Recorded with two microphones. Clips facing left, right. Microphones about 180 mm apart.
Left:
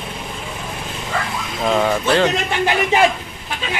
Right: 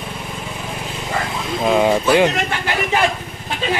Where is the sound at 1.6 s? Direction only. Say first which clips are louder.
Right 2 dB; 15° right (ahead or behind).